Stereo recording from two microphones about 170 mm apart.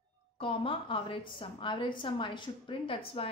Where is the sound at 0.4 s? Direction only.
30° left (ahead or behind).